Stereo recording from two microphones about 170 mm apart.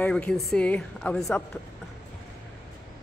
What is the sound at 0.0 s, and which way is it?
A woman's voice, 5° left (ahead or behind).